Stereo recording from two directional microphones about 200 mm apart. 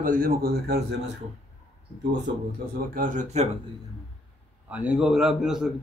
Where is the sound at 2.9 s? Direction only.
40° right (ahead or behind).